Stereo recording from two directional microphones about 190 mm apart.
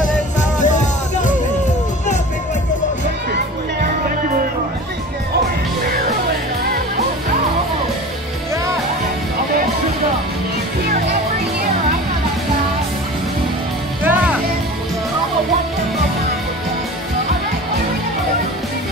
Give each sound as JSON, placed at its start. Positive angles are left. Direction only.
{"t": 0.0, "sound": "music", "side_deg": 40}
{"t": 14.0, "sound": "music", "side_deg": -10}